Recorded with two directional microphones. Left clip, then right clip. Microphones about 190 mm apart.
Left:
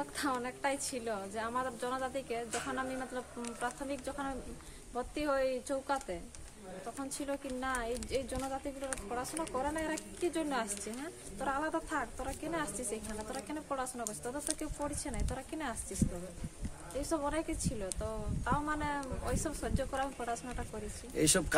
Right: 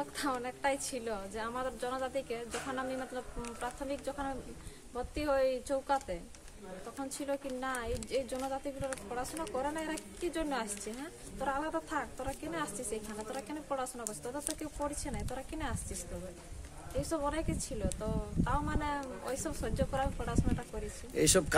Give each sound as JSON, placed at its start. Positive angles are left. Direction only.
{"t": 0.0, "sound": "speech", "side_deg": 5}
{"t": 17.1, "sound": "speech", "side_deg": 5}
{"t": 21.1, "sound": "speech", "side_deg": -30}